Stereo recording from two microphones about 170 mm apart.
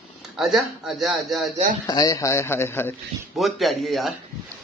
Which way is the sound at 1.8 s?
25° left (ahead or behind).